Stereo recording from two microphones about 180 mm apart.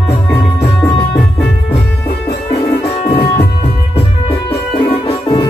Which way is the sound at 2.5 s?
35° left (ahead or behind).